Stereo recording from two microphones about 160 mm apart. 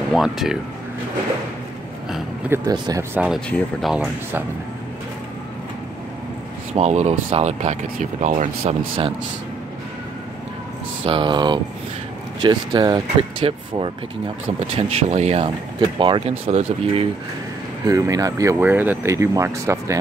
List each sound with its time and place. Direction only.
0.1 s speech: centre (ahead or behind)
2.5 s speech: 20° right (ahead or behind)
3.3 s speech: 5° left (ahead or behind)
3.9 s speech: 10° right (ahead or behind)
6.7 s speech: 40° right (ahead or behind)
11.1 s speech: 30° right (ahead or behind)
14.6 s speech: 45° right (ahead or behind)
17.8 s speech: 20° right (ahead or behind)